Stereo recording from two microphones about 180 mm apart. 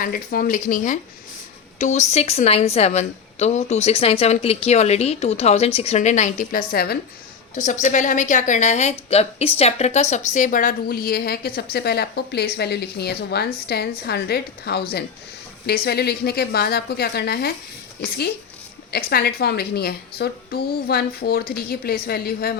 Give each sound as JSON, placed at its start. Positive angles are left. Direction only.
{"t": 0.0, "sound": "a woman's voice", "side_deg": 55}
{"t": 7.5, "sound": "a woman's voice", "side_deg": 45}